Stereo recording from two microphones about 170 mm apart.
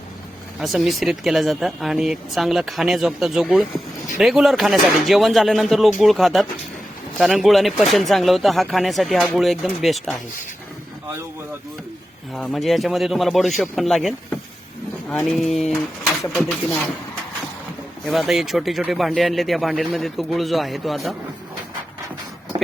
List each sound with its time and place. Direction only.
0.6 s speech: centre (ahead or behind)
12.3 s speech: centre (ahead or behind)
15.1 s speech: centre (ahead or behind)
18.0 s speech: centre (ahead or behind)
22.5 s a sound: 25° right (ahead or behind)